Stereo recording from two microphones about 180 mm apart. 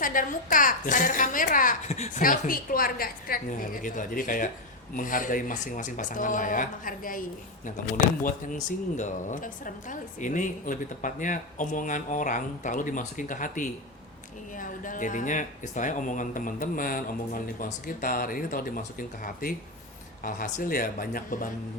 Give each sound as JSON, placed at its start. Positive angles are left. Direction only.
{"t": 0.0, "sound": "speech", "side_deg": 50}